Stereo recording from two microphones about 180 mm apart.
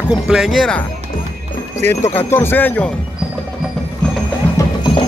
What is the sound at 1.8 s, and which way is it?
Speech, 15° left (ahead or behind).